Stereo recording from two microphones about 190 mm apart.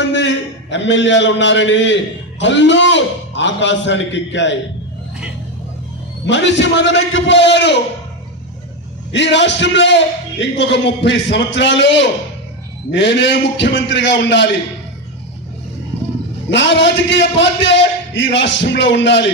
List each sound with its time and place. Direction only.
0.0 s a man's voice: 70° left (ahead or behind)
6.2 s a man's voice: 70° left (ahead or behind)
9.1 s a man's voice: 70° left (ahead or behind)
16.4 s a man's voice: 70° left (ahead or behind)